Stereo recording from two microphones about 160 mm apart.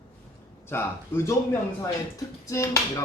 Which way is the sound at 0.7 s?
15° left (ahead or behind).